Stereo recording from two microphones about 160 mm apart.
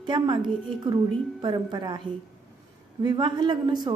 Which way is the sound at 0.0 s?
30° right (ahead or behind).